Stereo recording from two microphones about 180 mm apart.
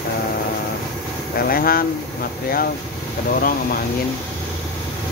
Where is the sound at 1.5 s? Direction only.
55° left (ahead or behind).